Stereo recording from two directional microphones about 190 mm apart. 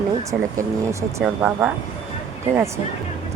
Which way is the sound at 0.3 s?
15° right (ahead or behind).